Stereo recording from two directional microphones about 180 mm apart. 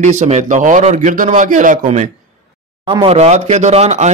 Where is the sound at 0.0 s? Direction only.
40° right (ahead or behind).